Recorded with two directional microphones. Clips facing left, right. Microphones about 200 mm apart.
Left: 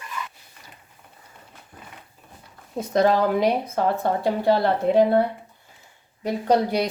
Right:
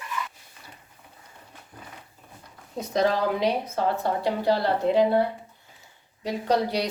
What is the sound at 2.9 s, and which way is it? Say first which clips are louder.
Speech: left 4 dB; 50° left (ahead or behind).